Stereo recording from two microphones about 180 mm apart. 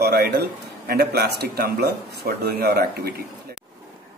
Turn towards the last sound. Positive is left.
turn(degrees=-60)  # may be behind; listen again after turning